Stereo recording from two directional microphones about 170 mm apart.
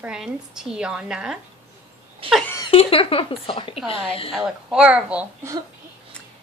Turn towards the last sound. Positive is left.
turn(degrees=-10)  # may be behind; listen again after turning